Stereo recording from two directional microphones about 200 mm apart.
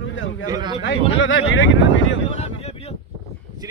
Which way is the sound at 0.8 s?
70° left (ahead or behind).